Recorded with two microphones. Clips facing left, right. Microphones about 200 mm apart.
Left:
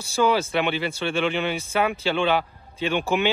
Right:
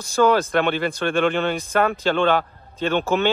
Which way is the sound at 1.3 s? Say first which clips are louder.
Right 3 dB; 10° left (ahead or behind).